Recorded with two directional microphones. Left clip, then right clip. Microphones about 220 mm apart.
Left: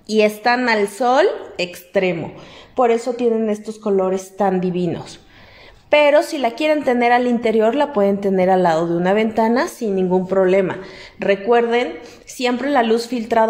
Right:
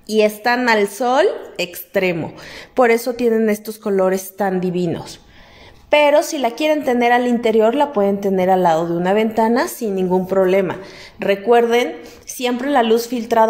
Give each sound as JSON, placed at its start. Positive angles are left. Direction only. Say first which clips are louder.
{"t": 0.1, "sound": "a woman's voice", "louder": "even", "side_deg": -5}
{"t": 2.7, "sound": "a woman's voice", "louder": "right 2 dB", "side_deg": -30}